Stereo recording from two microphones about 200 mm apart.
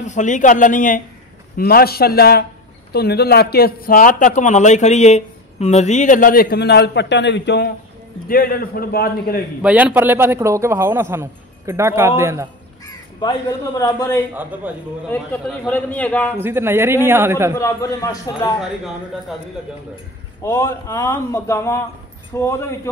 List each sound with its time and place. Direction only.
0.0 s a man's voice: 40° left (ahead or behind); by 7.7 s 60° left (ahead or behind)
8.3 s a man's voice: 45° left (ahead or behind)
9.6 s a man's voice: 5° right (ahead or behind)
13.2 s speech: 20° left (ahead or behind)
14.3 s a man's voice: 10° right (ahead or behind)
15.4 s speech: 5° left (ahead or behind)
16.3 s a man's voice: 10° right (ahead or behind)
17.6 s speech: 15° left (ahead or behind)
20.4 s speech: 15° left (ahead or behind)